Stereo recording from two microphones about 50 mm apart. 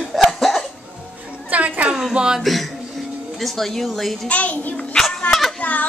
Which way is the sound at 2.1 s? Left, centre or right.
Centre.